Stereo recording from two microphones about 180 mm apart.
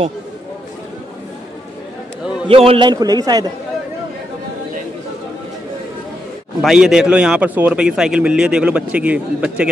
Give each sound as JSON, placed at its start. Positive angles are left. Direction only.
{"t": 2.4, "sound": "a man's voice", "side_deg": -30}
{"t": 6.6, "sound": "a man's voice", "side_deg": -5}